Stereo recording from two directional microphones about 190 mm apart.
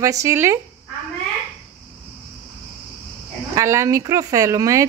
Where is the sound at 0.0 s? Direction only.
15° right (ahead or behind).